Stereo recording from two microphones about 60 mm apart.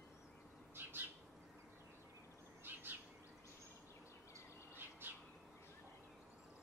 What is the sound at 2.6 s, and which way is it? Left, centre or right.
Bird, right.